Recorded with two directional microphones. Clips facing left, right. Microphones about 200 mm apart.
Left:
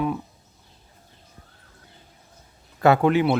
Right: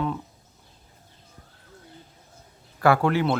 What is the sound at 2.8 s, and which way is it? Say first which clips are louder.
Speech: left 3 dB; 20° left (ahead or behind).